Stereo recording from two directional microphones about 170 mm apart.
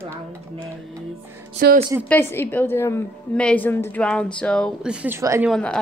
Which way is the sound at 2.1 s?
15° left (ahead or behind).